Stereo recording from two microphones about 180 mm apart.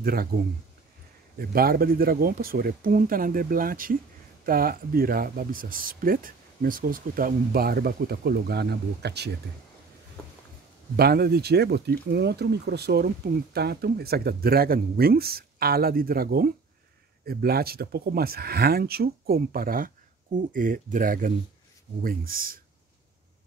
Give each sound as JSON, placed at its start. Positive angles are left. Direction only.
{"t": 0.0, "sound": "speech", "side_deg": -55}
{"t": 1.4, "sound": "speech", "side_deg": -55}
{"t": 11.0, "sound": "speech", "side_deg": -60}